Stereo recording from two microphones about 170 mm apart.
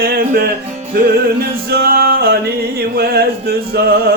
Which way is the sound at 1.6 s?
65° right (ahead or behind).